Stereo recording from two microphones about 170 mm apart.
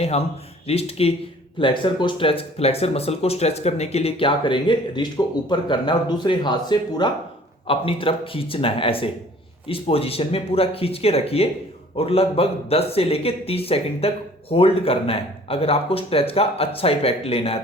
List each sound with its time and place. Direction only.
0.7 s speech: 35° left (ahead or behind)